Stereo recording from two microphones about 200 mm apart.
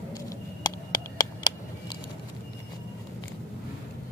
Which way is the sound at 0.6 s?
20° left (ahead or behind).